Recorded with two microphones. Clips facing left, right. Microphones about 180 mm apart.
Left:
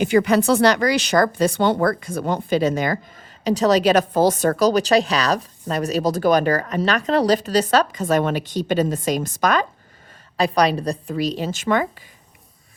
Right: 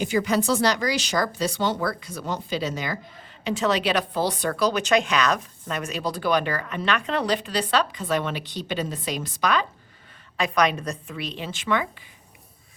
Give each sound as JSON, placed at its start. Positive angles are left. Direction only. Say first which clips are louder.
{"t": 0.0, "sound": "a woman's voice", "louder": "left 6 dB", "side_deg": 65}
{"t": 3.4, "sound": "a woman's voice", "louder": "left 7 dB", "side_deg": 40}